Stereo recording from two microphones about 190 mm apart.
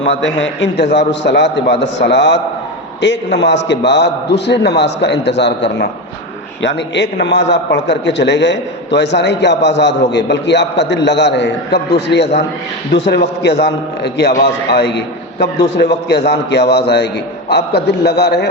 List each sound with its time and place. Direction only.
0.0 s a man's voice: 70° left (ahead or behind)